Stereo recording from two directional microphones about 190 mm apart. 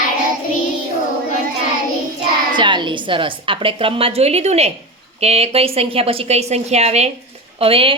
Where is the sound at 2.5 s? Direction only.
25° right (ahead or behind).